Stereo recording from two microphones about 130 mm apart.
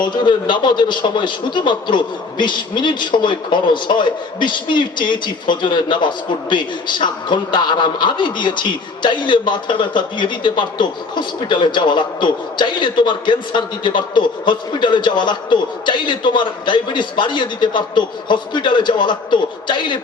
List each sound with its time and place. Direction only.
0.0 s a man's voice: 35° left (ahead or behind)